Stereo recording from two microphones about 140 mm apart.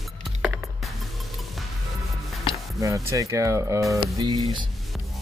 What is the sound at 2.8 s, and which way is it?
Speech, 25° right (ahead or behind).